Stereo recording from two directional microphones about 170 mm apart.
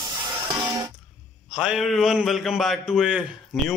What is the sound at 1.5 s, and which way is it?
A man's voice, 5° right (ahead or behind).